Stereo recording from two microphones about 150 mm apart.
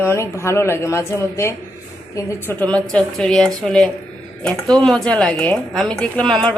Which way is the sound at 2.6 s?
5° left (ahead or behind).